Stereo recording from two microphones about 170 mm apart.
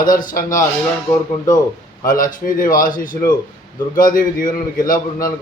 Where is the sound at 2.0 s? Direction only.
55° left (ahead or behind).